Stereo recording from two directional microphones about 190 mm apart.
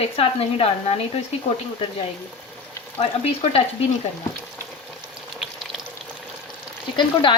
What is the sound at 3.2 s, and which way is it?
Speech, 30° left (ahead or behind).